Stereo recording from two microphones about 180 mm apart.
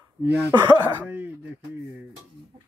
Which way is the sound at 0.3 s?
25° right (ahead or behind).